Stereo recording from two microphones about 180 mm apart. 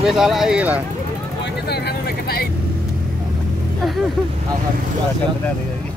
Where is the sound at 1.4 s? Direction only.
65° left (ahead or behind).